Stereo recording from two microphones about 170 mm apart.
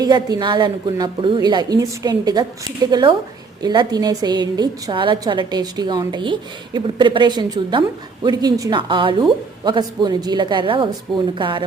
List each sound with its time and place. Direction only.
0.0 s a woman's voice: 25° right (ahead or behind)